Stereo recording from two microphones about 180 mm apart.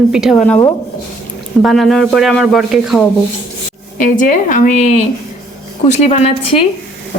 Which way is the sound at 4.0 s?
45° left (ahead or behind).